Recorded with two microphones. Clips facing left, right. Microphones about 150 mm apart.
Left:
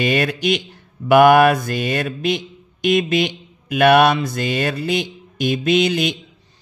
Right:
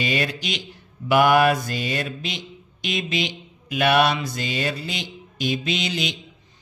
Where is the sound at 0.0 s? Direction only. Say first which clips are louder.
Left 7 dB; 55° left (ahead or behind).